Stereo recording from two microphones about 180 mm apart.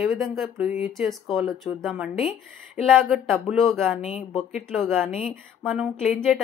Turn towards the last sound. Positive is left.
turn(degrees=0)  # may be behind; listen again after turning